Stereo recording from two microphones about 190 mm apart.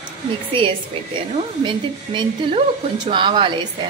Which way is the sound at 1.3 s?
25° right (ahead or behind).